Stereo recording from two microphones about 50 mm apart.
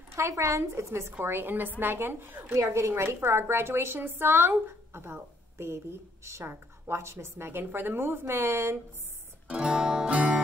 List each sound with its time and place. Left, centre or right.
0.1 s a woman's voice: right
1.2 s a woman's voice: right
2.7 s a woman's voice: right
9.5 s guitar: centre
10.0 s music: right